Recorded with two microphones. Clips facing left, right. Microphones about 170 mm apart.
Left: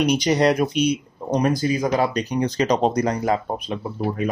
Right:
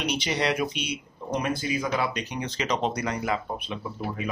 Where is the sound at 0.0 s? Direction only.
40° left (ahead or behind).